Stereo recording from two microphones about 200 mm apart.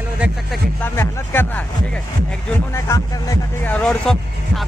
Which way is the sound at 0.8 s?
10° left (ahead or behind).